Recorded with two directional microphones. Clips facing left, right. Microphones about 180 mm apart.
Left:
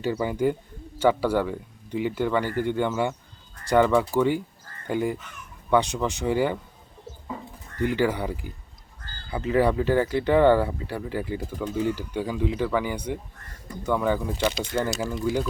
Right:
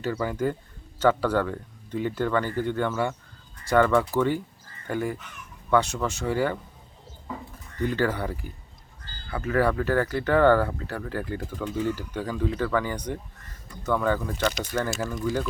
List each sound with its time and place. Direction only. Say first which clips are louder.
0.0 s speech: left 3 dB; 15° left (ahead or behind)
7.8 s speech: left 2 dB; 15° left (ahead or behind)
14.5 s speech: left 2 dB; 25° left (ahead or behind)